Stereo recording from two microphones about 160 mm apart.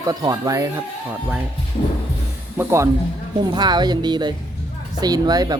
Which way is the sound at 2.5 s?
20° right (ahead or behind).